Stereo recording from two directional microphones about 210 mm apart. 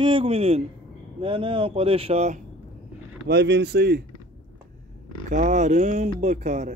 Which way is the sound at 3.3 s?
55° right (ahead or behind).